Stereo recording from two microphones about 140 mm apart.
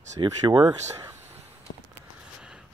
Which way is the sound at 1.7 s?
65° left (ahead or behind).